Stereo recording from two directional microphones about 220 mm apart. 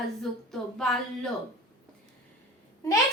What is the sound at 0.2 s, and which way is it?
Speech, centre (ahead or behind).